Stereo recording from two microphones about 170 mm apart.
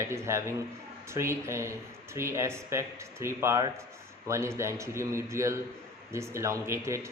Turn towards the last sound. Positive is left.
turn(degrees=-15)  # may be behind; listen again after turning